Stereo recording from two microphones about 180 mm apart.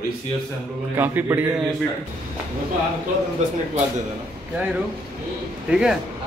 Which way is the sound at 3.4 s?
40° right (ahead or behind).